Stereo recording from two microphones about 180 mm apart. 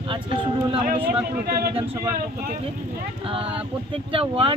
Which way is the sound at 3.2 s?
30° right (ahead or behind).